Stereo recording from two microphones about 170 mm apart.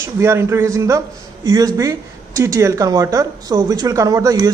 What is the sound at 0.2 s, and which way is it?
A man's voice, 15° right (ahead or behind).